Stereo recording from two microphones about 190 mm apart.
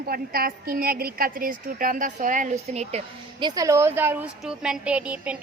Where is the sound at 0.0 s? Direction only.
50° right (ahead or behind).